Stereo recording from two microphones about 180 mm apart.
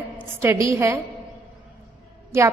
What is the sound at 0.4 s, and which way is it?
Speech, 15° right (ahead or behind).